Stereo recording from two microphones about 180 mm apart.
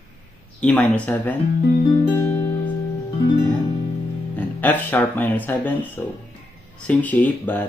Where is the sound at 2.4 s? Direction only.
15° left (ahead or behind).